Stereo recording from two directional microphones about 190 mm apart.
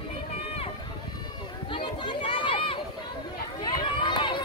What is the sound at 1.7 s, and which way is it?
Run, 25° left (ahead or behind).